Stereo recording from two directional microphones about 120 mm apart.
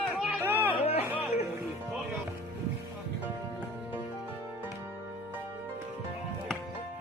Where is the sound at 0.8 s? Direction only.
55° left (ahead or behind).